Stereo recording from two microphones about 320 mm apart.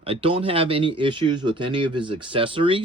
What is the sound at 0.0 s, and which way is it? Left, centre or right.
Speech, centre.